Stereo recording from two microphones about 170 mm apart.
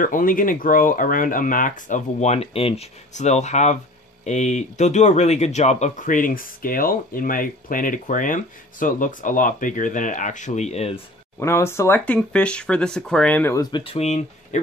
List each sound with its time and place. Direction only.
0.0 s speech: 55° left (ahead or behind)
11.3 s speech: 15° left (ahead or behind)
13.6 s speech: 25° left (ahead or behind)